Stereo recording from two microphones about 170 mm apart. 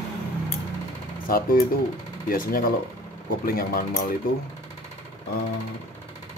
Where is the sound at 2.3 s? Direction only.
60° left (ahead or behind).